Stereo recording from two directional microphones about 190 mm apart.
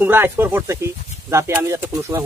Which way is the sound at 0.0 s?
10° right (ahead or behind).